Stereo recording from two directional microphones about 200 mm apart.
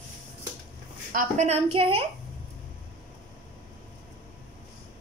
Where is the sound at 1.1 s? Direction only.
40° right (ahead or behind).